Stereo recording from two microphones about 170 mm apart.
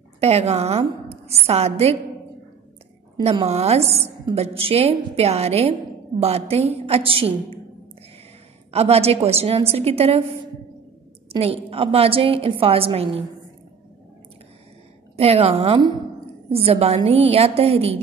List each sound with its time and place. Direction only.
0.2 s a woman's voice: 40° right (ahead or behind)
3.2 s a woman's voice: 35° right (ahead or behind)
8.7 s a woman's voice: 35° right (ahead or behind)
11.3 s a woman's voice: 35° right (ahead or behind)
15.1 s a woman's voice: 35° right (ahead or behind)